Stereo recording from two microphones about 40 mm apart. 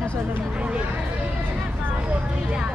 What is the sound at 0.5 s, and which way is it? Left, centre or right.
Speech, right.